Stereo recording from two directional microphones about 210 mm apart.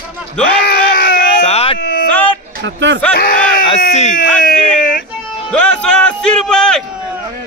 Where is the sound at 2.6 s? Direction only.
60° right (ahead or behind).